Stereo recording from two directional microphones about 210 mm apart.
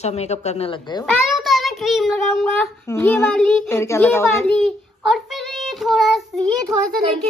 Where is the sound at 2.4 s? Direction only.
10° left (ahead or behind).